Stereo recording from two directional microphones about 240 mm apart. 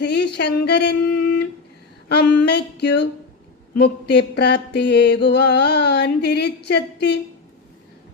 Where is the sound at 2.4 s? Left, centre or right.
Left.